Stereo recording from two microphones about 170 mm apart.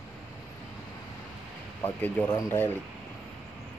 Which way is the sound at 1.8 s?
10° left (ahead or behind).